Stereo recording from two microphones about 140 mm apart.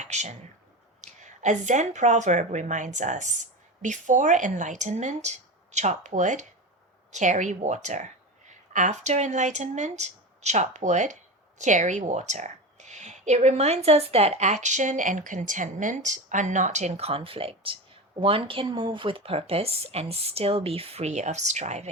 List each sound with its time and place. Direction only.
0.0 s speech: 55° right (ahead or behind)